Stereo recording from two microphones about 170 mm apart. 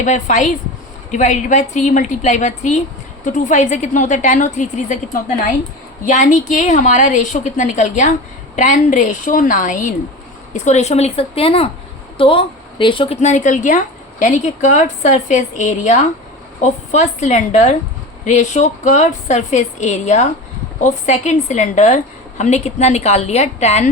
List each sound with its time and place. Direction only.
0.0 s a woman's voice: 45° left (ahead or behind)
6.1 s a woman's voice: 45° left (ahead or behind)